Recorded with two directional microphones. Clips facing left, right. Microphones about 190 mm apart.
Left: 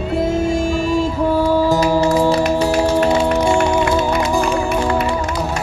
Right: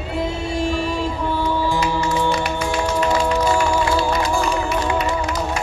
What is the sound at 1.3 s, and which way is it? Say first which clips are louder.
Music: left 7 dB; 40° left (ahead or behind).